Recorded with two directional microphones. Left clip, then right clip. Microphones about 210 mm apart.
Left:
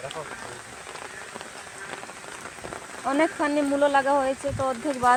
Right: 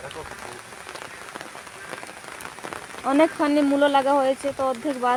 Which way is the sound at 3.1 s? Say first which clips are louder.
Right 4 dB; 30° right (ahead or behind).